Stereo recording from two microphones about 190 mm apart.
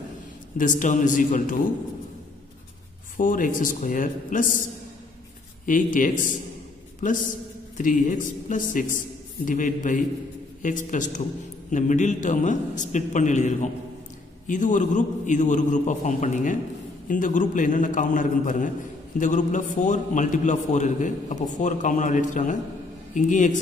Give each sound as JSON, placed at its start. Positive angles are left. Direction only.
{"t": 0.6, "sound": "a man's voice", "side_deg": 40}
{"t": 3.2, "sound": "a man's voice", "side_deg": 45}
{"t": 5.7, "sound": "a man's voice", "side_deg": 45}
{"t": 7.7, "sound": "a man's voice", "side_deg": 40}